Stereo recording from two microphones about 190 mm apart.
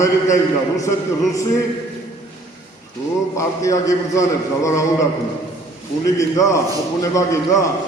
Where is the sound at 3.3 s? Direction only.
15° left (ahead or behind).